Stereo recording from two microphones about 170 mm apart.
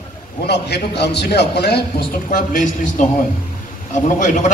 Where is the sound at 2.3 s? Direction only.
50° left (ahead or behind).